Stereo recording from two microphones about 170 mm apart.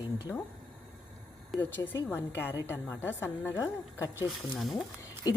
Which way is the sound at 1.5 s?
10° left (ahead or behind).